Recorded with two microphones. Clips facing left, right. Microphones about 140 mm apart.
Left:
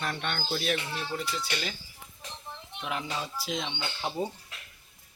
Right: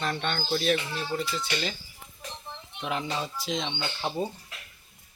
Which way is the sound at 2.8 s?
Centre (ahead or behind).